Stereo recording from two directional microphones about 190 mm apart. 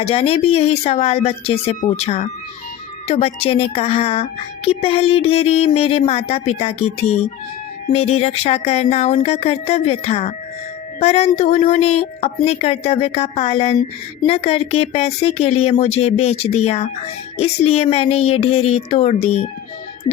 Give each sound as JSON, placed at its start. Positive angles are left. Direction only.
{"t": 0.0, "sound": "speech", "side_deg": 30}